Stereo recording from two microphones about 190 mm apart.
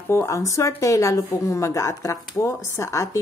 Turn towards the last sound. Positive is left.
turn(degrees=15)  # may be behind; listen again after turning